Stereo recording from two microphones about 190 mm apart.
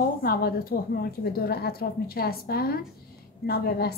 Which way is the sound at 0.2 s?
50° left (ahead or behind).